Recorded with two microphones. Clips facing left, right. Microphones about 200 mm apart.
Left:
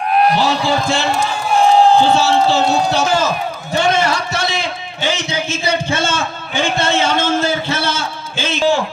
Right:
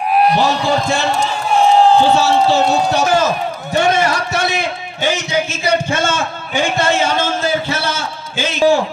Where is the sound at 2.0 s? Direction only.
15° right (ahead or behind).